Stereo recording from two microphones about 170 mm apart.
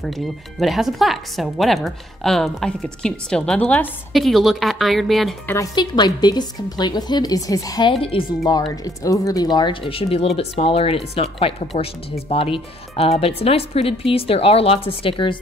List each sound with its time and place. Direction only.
0.6 s a woman's voice: centre (ahead or behind)
5.5 s a woman's voice: 20° left (ahead or behind)
8.0 s speech: 30° left (ahead or behind)
8.8 s speech: 20° left (ahead or behind)